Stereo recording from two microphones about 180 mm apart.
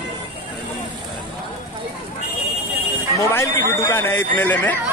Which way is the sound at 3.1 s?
15° left (ahead or behind).